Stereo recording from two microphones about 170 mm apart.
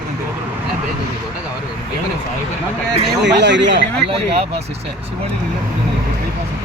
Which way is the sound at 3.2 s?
90° right.